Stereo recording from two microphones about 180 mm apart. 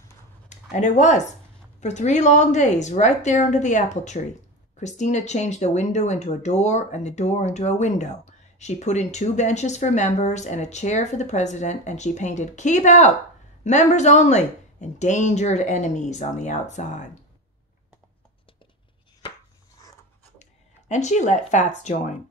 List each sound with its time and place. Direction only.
0.5 s speech: 40° left (ahead or behind)
20.9 s speech: 40° left (ahead or behind)